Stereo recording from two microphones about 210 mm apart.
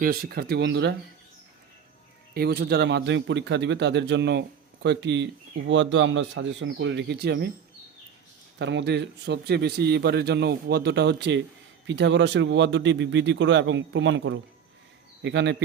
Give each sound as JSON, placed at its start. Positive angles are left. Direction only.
{"t": 0.0, "sound": "a man's voice", "side_deg": -45}
{"t": 2.3, "sound": "speech", "side_deg": -50}
{"t": 8.5, "sound": "a man's voice", "side_deg": -55}